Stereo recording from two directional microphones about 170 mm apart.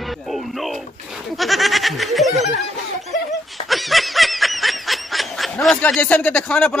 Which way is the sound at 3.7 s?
Centre (ahead or behind).